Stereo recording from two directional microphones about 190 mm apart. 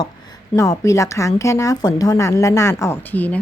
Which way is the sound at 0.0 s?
20° left (ahead or behind).